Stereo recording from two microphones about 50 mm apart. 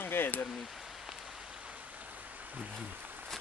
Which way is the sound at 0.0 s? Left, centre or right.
Left.